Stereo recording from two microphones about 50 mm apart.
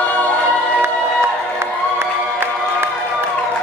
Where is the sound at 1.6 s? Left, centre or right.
Right.